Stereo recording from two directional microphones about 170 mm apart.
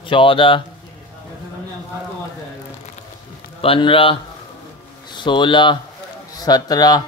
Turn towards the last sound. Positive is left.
turn(degrees=20)  # may be behind; listen again after turning